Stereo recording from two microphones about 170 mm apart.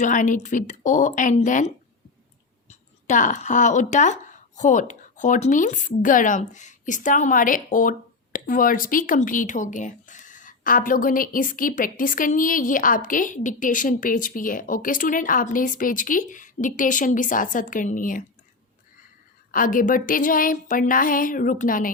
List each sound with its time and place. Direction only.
0.0 s speech: 50° left (ahead or behind)
19.5 s speech: 55° left (ahead or behind)